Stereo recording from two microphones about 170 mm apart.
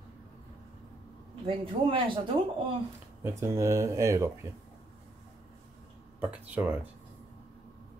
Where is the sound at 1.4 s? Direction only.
30° right (ahead or behind).